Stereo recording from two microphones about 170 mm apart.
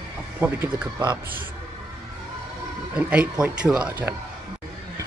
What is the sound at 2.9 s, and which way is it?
Speech, 5° right (ahead or behind).